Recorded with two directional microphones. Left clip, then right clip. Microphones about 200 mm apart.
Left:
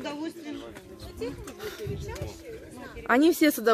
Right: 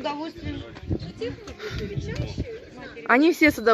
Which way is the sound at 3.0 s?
Centre (ahead or behind).